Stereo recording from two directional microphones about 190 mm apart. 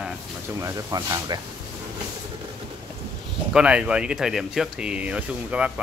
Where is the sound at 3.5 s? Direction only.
5° right (ahead or behind).